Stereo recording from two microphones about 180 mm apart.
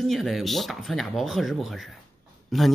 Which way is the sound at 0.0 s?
Centre (ahead or behind).